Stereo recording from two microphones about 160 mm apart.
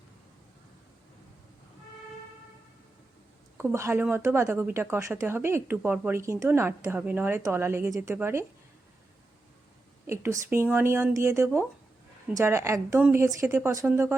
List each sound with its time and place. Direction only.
3.6 s a woman's voice: 15° right (ahead or behind)
10.1 s a woman's voice: 15° right (ahead or behind)